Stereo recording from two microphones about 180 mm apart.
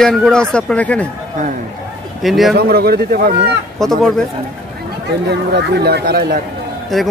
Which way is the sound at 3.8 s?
Centre (ahead or behind).